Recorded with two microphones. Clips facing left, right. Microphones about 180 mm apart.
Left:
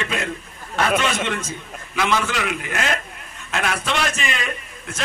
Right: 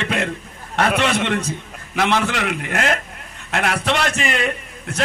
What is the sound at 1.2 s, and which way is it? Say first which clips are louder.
Speech: right 4 dB; 35° right (ahead or behind).